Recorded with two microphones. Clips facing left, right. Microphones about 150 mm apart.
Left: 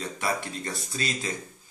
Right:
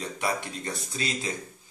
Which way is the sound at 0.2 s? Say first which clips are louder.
Even; 20° right (ahead or behind).